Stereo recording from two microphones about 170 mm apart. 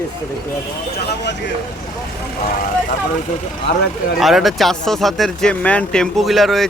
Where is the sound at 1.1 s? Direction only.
90° left.